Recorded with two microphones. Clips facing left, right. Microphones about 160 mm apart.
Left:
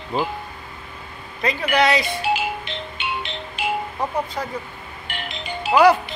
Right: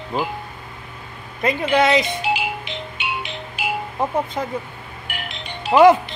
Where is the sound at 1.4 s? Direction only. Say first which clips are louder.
Right 2 dB; 20° right (ahead or behind).